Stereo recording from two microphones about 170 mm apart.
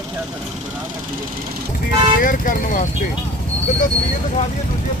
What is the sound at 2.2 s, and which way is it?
Speech, 55° left (ahead or behind).